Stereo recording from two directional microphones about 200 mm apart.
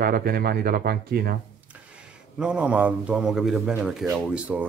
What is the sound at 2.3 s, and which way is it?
Speech, 5° right (ahead or behind).